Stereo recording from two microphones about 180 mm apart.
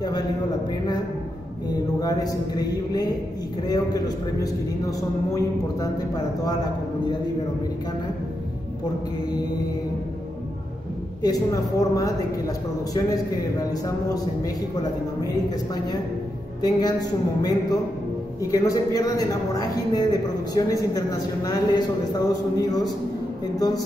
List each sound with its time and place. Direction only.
1.7 s a man's voice: 20° left (ahead or behind)
11.2 s a man's voice: 20° left (ahead or behind)
23.5 s a man's voice: 20° left (ahead or behind)